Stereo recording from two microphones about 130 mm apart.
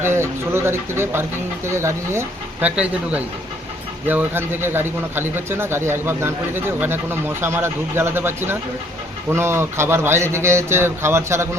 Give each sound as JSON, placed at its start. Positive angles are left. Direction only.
{"t": 0.0, "sound": "speech", "side_deg": -20}